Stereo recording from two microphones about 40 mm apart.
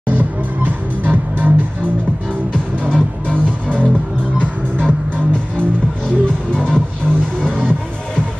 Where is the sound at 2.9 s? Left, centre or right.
Left.